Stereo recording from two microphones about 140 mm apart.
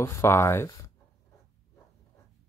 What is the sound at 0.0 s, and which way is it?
Speech, 20° left (ahead or behind).